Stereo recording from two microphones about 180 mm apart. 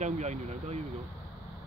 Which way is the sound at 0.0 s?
40° right (ahead or behind).